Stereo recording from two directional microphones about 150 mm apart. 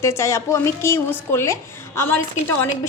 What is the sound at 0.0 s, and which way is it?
A woman's voice, 20° left (ahead or behind).